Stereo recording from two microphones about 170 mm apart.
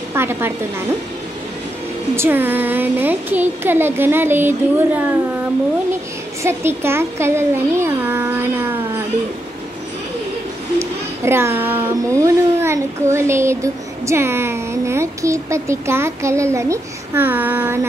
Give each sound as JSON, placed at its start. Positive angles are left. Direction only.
{"t": 0.1, "sound": "a woman's voice", "side_deg": -15}
{"t": 2.1, "sound": "speech", "side_deg": -10}
{"t": 6.4, "sound": "speech", "side_deg": -15}
{"t": 10.8, "sound": "speech", "side_deg": -15}